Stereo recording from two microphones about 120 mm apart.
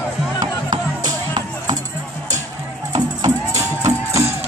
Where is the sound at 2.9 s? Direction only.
30° right (ahead or behind).